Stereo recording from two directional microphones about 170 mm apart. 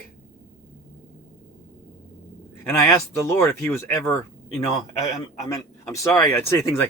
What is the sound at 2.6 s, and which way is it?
Speech, 15° left (ahead or behind).